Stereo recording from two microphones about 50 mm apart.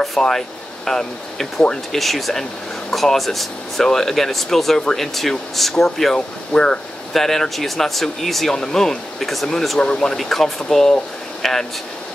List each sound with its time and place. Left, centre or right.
0.0 s speech: centre
6.1 s speech: centre
7.2 s speech: centre